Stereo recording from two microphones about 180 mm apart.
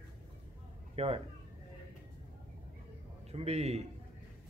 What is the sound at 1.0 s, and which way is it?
Speech, 35° right (ahead or behind).